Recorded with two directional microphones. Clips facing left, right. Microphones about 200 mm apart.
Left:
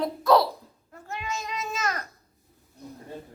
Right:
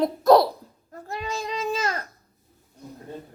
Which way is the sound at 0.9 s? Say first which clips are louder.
Right 3 dB; 35° right (ahead or behind).